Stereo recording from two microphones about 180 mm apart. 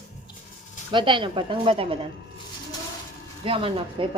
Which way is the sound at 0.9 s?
25° right (ahead or behind).